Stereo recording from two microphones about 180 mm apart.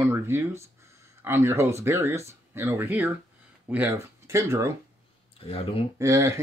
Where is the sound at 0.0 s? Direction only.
15° right (ahead or behind).